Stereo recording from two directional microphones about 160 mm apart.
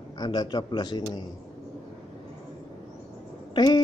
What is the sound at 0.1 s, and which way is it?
Speech, 25° left (ahead or behind).